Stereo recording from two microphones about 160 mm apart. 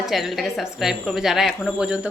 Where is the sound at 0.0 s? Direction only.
Centre (ahead or behind).